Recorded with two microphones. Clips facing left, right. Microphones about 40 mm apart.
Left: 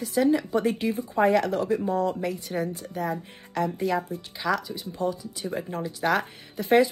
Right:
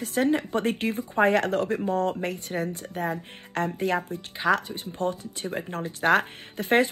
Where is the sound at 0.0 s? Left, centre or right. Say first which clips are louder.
Left 1 dB; right.